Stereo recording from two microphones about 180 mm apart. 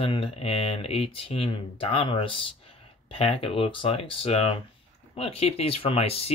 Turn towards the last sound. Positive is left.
turn(degrees=35)  # may be behind; listen again after turning